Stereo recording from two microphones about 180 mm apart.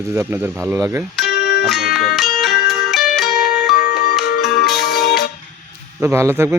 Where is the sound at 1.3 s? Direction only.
70° left (ahead or behind).